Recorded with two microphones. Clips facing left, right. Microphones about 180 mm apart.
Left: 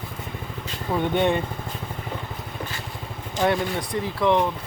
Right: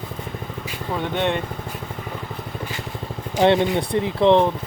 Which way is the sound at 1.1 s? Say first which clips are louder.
Left 1 dB; 10° left (ahead or behind).